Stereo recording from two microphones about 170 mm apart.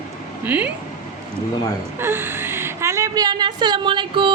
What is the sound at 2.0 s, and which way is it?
A woman's voice, 15° right (ahead or behind).